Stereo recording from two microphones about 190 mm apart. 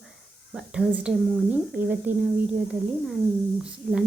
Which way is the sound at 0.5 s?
5° right (ahead or behind).